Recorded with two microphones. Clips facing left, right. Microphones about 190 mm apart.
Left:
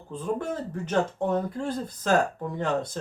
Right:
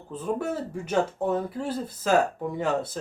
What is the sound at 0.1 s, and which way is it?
Speech, 5° right (ahead or behind).